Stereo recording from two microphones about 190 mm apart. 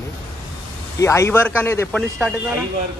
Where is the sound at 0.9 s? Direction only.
15° left (ahead or behind).